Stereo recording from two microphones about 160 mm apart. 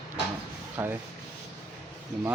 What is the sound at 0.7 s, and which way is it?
Sanding, 10° right (ahead or behind).